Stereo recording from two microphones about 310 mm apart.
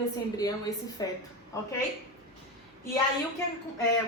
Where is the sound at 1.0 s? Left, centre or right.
Centre.